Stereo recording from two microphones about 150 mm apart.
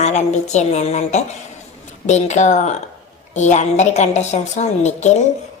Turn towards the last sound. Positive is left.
turn(degrees=50)  # may be behind; listen again after turning